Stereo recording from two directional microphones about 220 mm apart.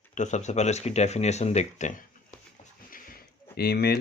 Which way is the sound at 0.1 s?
35° left (ahead or behind).